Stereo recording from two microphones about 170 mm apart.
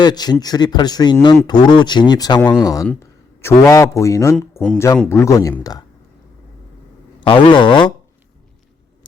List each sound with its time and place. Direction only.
0.0 s speech: 25° left (ahead or behind)
2.8 s a man's voice: 10° left (ahead or behind)
4.4 s speech: 5° left (ahead or behind)
5.0 s speech: 15° left (ahead or behind)
7.2 s speech: 30° left (ahead or behind)